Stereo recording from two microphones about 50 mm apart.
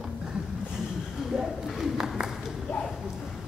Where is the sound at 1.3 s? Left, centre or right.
Centre.